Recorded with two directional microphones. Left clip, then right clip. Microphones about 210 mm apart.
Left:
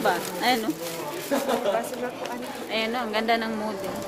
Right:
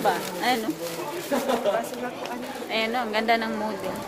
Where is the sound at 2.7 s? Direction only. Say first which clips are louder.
Right 1 dB; centre (ahead or behind).